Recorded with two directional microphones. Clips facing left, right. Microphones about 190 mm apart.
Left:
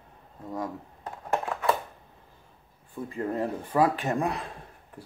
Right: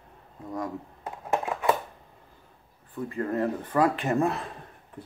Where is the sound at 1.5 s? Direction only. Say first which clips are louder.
Right 2 dB; 15° right (ahead or behind).